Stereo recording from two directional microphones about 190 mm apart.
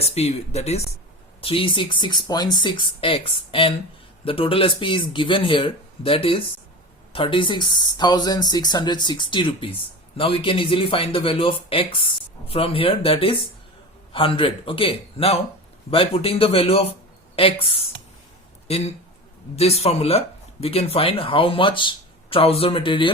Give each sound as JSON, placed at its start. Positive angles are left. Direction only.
{"t": 0.0, "sound": "speech", "side_deg": 30}